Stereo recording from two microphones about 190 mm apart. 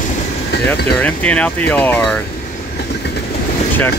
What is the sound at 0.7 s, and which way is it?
Speech, 10° left (ahead or behind).